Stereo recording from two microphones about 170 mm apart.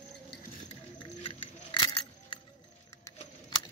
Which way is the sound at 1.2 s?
30° left (ahead or behind).